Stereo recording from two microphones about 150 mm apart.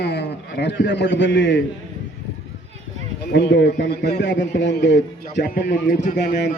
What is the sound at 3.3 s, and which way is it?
Speech, 90° left.